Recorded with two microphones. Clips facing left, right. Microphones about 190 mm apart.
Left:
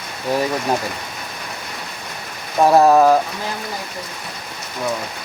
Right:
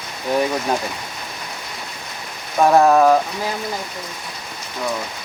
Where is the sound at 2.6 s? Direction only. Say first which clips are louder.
Left 1 dB; 5° left (ahead or behind).